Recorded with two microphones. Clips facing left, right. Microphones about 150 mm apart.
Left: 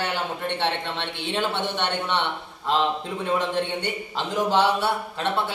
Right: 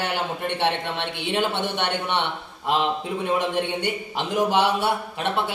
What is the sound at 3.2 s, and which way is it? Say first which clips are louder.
A man's voice: even; 15° right (ahead or behind).